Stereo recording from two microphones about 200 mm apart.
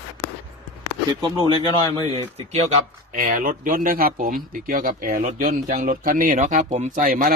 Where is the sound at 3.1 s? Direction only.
45° right (ahead or behind).